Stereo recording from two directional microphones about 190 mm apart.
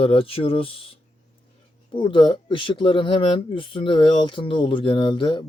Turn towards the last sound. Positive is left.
turn(degrees=25)  # may be behind; listen again after turning